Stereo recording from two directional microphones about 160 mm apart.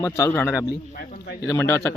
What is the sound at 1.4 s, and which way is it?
Speech, 15° left (ahead or behind).